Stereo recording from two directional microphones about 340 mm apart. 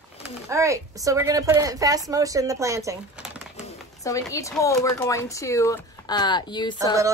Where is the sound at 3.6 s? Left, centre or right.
Centre.